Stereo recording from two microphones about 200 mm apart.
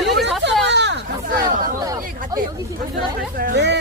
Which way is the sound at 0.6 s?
60° right (ahead or behind).